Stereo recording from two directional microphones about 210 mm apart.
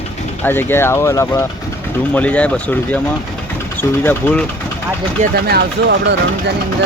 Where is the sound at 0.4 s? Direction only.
10° left (ahead or behind).